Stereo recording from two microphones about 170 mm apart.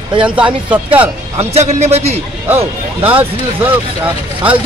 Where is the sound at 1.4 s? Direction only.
40° right (ahead or behind).